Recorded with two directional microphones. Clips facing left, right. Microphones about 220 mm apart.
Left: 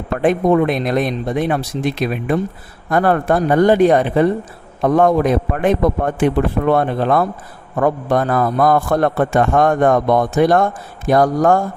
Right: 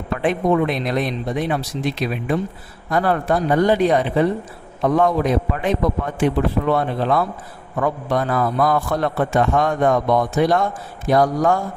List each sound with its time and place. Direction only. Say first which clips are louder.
0.2 s a man's voice: left 4 dB; 45° left (ahead or behind)